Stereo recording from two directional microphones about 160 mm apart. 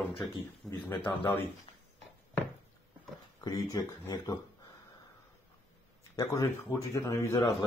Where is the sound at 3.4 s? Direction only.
20° left (ahead or behind).